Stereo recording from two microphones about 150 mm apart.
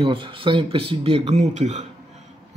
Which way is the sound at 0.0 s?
35° right (ahead or behind).